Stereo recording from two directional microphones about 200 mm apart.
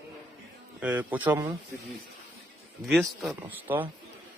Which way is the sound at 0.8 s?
5° right (ahead or behind).